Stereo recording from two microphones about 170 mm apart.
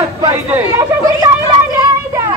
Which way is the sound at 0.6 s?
20° right (ahead or behind).